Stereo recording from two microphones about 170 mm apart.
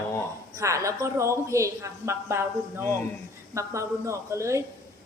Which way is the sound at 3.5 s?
15° right (ahead or behind).